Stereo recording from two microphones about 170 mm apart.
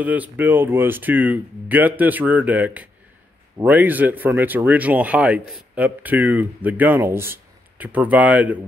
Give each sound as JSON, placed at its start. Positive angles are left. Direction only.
{"t": 0.0, "sound": "speech", "side_deg": -10}